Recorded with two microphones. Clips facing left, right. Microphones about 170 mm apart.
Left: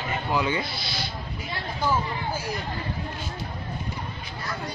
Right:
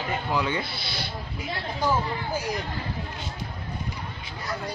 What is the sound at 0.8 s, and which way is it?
Speech, 60° right (ahead or behind).